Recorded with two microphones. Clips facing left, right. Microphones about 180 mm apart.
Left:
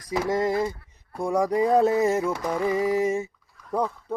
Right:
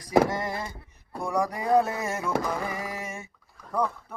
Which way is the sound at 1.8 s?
25° left (ahead or behind).